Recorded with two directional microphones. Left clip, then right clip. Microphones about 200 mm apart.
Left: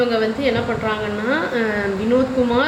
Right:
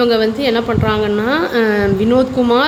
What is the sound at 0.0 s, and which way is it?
Speech, 55° right (ahead or behind).